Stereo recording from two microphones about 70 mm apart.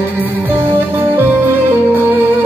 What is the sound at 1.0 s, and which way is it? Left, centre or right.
Music, right.